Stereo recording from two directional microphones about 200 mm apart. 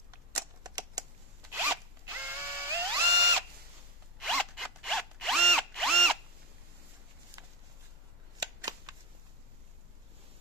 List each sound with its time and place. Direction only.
0.3 s typewriter: 20° right (ahead or behind)
1.5 s zipper: 10° right (ahead or behind)
4.2 s drill: centre (ahead or behind)
7.4 s a sound: 20° right (ahead or behind)